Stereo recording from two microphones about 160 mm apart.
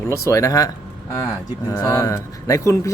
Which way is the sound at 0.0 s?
20° left (ahead or behind).